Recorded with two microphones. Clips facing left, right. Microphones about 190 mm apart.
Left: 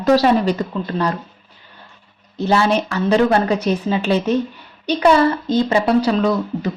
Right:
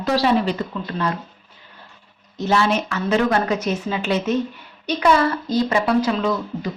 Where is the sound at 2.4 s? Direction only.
30° left (ahead or behind).